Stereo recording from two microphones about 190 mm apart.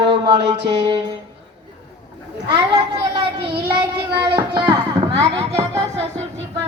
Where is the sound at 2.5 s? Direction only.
25° right (ahead or behind).